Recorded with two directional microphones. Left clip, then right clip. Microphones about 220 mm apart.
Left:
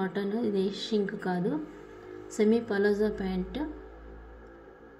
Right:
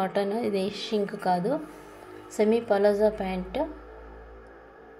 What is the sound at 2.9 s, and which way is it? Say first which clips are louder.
Speech: right 5 dB; centre (ahead or behind).